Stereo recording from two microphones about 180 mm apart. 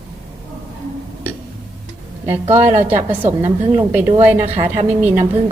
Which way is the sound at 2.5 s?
10° right (ahead or behind).